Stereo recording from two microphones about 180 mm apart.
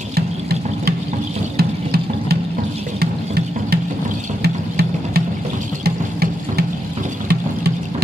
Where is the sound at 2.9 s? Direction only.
60° right (ahead or behind).